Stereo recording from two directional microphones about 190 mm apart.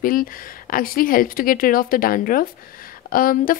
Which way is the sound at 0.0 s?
45° left (ahead or behind).